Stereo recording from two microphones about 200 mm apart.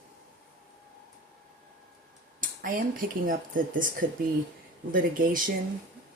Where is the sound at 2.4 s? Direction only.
40° right (ahead or behind).